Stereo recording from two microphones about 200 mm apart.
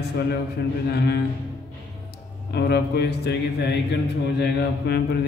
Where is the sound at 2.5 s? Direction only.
55° left (ahead or behind).